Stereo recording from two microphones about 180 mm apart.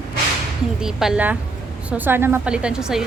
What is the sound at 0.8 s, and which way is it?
A woman's voice, 5° right (ahead or behind).